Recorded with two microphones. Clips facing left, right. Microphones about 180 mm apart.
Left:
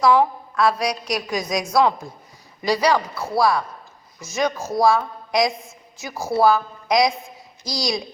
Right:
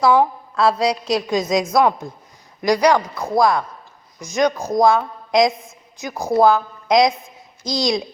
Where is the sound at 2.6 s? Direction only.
15° right (ahead or behind).